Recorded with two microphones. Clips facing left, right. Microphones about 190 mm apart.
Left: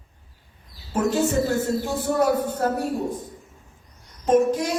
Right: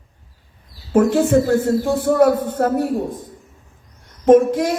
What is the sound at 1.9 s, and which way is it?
Speech, 30° right (ahead or behind).